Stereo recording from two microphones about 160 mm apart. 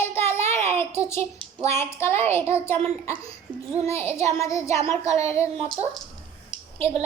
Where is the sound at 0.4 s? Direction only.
40° right (ahead or behind).